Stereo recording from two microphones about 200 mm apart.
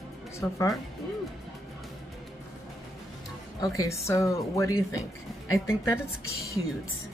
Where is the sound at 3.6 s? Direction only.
15° left (ahead or behind).